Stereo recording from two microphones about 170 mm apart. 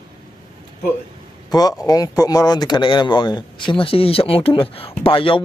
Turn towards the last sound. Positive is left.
turn(degrees=30)  # may be behind; listen again after turning